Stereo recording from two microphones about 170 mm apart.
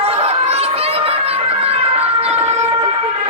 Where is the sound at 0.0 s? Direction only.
35° right (ahead or behind).